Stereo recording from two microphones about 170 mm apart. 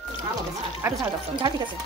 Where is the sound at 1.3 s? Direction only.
25° right (ahead or behind).